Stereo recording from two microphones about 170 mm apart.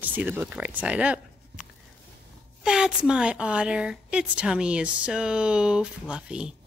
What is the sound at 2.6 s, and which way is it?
A woman's voice, 5° right (ahead or behind).